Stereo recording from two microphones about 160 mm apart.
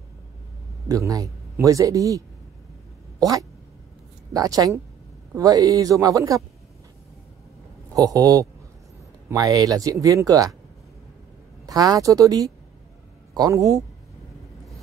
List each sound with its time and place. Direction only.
0.8 s speech: 20° right (ahead or behind)
7.9 s speech: 20° right (ahead or behind)
11.6 s a man's voice: 25° right (ahead or behind)